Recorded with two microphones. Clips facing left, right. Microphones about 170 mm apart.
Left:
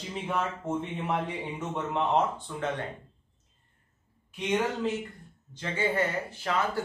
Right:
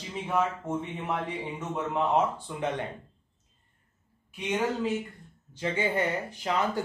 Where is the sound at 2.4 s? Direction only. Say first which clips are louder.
Right 1 dB; 15° right (ahead or behind).